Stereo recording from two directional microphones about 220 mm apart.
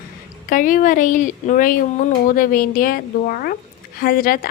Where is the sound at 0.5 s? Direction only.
35° left (ahead or behind).